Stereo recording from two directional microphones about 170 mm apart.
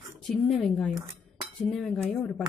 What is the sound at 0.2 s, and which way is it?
A woman's voice, centre (ahead or behind).